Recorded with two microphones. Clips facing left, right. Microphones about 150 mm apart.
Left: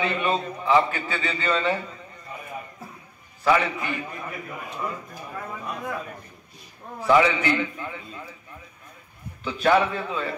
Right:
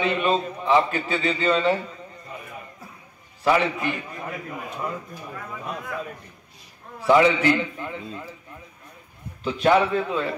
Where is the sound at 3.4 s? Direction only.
30° right (ahead or behind).